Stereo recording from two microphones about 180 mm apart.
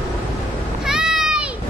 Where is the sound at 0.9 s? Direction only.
5° right (ahead or behind).